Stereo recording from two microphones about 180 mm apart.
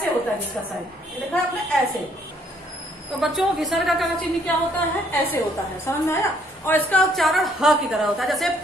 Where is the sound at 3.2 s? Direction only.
Centre (ahead or behind).